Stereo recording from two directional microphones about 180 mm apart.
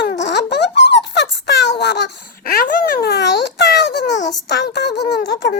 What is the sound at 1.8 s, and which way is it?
A child's voice, 65° left (ahead or behind).